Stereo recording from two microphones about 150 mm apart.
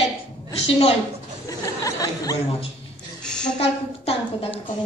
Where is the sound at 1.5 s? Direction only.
25° left (ahead or behind).